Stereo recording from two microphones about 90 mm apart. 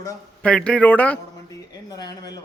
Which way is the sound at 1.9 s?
45° left (ahead or behind).